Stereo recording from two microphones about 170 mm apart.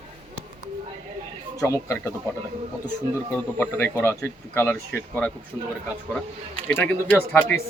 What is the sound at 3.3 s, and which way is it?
Speech, 10° left (ahead or behind).